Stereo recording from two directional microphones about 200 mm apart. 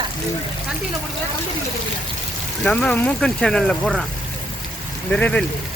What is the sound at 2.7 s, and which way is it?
Speech, 10° left (ahead or behind).